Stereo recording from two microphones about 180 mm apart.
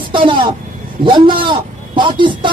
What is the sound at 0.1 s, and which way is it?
Speech, 25° right (ahead or behind).